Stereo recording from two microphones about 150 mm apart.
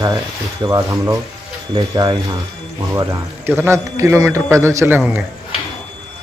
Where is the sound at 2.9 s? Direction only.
15° right (ahead or behind).